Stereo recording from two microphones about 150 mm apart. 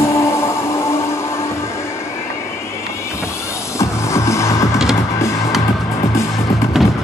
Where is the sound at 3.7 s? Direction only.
20° left (ahead or behind).